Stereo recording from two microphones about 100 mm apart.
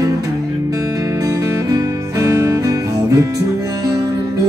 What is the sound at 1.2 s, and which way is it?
Music, 35° right (ahead or behind).